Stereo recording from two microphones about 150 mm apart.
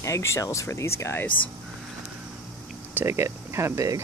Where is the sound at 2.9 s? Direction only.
15° right (ahead or behind).